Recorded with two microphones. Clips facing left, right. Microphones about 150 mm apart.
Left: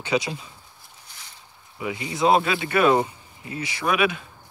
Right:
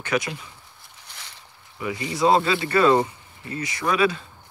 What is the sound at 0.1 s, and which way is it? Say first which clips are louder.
Speech: left 1 dB; 25° left (ahead or behind).